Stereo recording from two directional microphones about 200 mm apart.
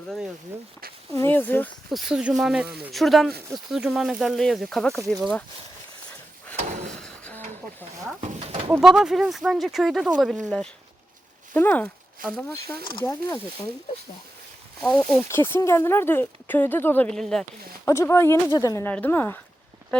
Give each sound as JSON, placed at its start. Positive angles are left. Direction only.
{"t": 1.1, "sound": "speech", "side_deg": 10}
{"t": 1.9, "sound": "speech", "side_deg": 0}
{"t": 4.9, "sound": "speech", "side_deg": -15}
{"t": 7.0, "sound": "a sound", "side_deg": 10}
{"t": 8.2, "sound": "bird", "side_deg": -30}
{"t": 8.8, "sound": "speech", "side_deg": 0}
{"t": 11.5, "sound": "speech", "side_deg": 10}
{"t": 12.8, "sound": "speech", "side_deg": 25}
{"t": 13.1, "sound": "speech", "side_deg": 10}
{"t": 14.8, "sound": "speech", "side_deg": 0}
{"t": 17.8, "sound": "speech", "side_deg": 15}